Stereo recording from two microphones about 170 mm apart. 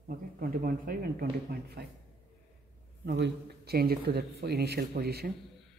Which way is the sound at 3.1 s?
85° right.